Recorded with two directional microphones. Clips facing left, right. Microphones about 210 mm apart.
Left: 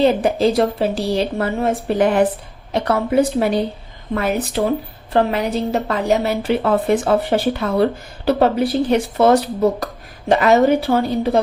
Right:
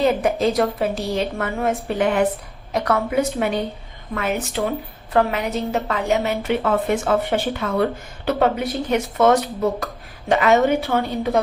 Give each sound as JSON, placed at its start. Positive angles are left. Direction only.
{"t": 0.0, "sound": "a woman's voice", "side_deg": 30}